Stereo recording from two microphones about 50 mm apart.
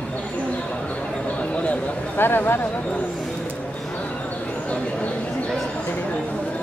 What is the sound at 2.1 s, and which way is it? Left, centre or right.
Speech, left.